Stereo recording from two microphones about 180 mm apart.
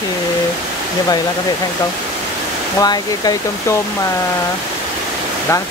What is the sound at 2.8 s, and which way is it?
Speech, 20° left (ahead or behind).